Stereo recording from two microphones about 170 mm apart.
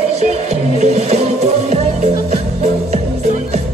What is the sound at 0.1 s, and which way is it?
Music, 40° right (ahead or behind).